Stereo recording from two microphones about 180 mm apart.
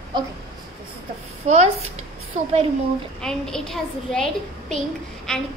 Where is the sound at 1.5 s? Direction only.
40° right (ahead or behind).